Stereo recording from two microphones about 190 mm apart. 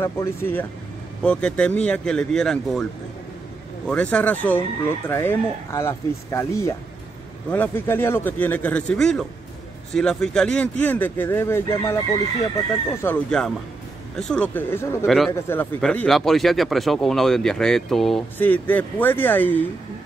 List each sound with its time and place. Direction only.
0.0 s speech: 15° left (ahead or behind)
13.0 s speech: 5° left (ahead or behind)
15.0 s speech: centre (ahead or behind)
15.3 s speech: 10° left (ahead or behind)